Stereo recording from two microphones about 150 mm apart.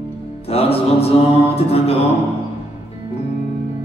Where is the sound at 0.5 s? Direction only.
40° left (ahead or behind).